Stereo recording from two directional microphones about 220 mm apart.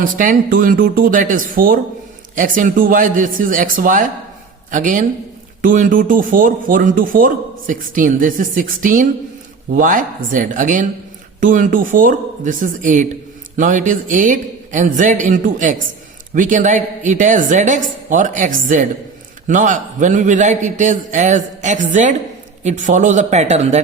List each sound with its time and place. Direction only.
0.0 s speech: 40° right (ahead or behind)